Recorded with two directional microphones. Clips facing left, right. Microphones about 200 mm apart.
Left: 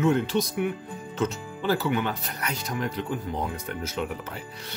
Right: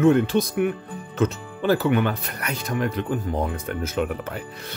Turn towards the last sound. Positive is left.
turn(degrees=-55)  # may be behind; listen again after turning